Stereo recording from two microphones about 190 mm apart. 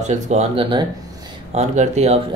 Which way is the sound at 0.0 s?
35° right (ahead or behind).